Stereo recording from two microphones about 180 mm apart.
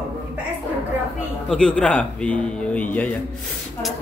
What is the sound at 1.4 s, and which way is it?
Speech, 5° left (ahead or behind).